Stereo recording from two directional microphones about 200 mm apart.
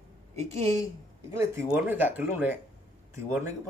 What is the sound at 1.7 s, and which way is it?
Speech, 10° right (ahead or behind).